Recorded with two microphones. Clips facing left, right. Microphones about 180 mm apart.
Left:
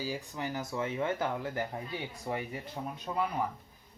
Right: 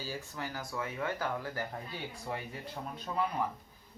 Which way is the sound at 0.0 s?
15° left (ahead or behind).